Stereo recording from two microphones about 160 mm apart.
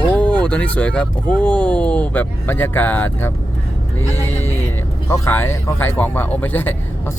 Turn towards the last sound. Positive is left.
turn(degrees=10)  # may be behind; listen again after turning